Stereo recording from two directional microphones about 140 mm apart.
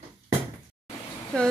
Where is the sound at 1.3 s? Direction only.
5° left (ahead or behind).